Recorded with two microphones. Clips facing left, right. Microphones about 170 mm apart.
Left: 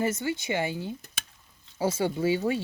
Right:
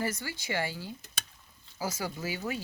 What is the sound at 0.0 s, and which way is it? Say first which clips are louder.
Speech: left 7 dB; 25° left (ahead or behind).